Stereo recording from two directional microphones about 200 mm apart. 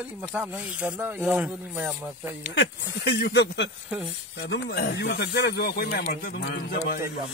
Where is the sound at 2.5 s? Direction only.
60° left (ahead or behind).